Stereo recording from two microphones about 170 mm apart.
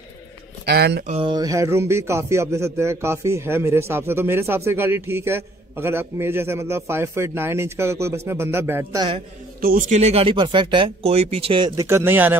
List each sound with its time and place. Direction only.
0.7 s speech: 70° right (ahead or behind)
1.0 s speech: 35° right (ahead or behind)
1.3 s a man's voice: 20° right (ahead or behind)
9.6 s speech: 55° right (ahead or behind); by 11.7 s 30° right (ahead or behind)
11.7 s a man's voice: 15° right (ahead or behind)